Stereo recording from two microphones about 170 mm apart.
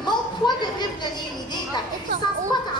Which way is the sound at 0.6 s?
25° left (ahead or behind).